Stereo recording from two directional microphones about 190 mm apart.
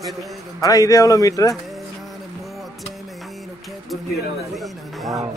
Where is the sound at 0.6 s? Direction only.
20° left (ahead or behind).